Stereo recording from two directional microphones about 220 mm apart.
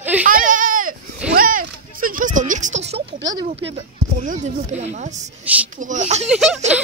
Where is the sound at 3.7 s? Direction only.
30° right (ahead or behind).